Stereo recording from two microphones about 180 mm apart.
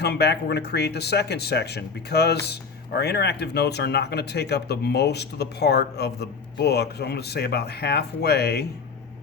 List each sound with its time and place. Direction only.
0.0 s speech: 65° left (ahead or behind)